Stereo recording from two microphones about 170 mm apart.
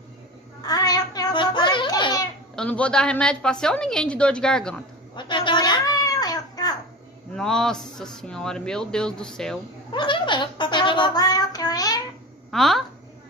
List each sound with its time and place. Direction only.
0.6 s a sound: 20° left (ahead or behind)
2.5 s a man's voice: 5° left (ahead or behind)
5.1 s cat: 25° left (ahead or behind)
7.3 s a man's voice: 5° left (ahead or behind)
9.9 s a child's voice: 30° left (ahead or behind)
12.4 s speech: centre (ahead or behind)